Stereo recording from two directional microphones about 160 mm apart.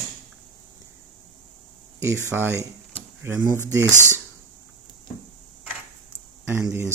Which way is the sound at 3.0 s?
15° right (ahead or behind).